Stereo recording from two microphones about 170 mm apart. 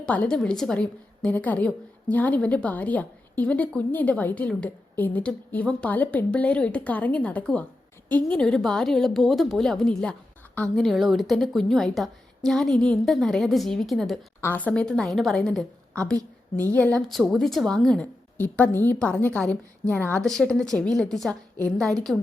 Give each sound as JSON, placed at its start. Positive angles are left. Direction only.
{"t": 0.0, "sound": "a woman's voice", "side_deg": 5}
{"t": 16.1, "sound": "a woman's voice", "side_deg": -20}
{"t": 16.7, "sound": "a woman's voice", "side_deg": 5}